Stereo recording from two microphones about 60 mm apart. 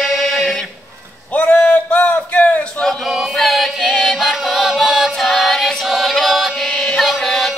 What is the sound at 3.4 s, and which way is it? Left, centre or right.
Chant, centre.